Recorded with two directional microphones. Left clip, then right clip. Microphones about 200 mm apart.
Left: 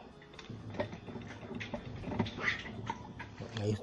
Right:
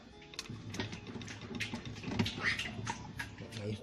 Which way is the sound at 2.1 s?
25° right (ahead or behind).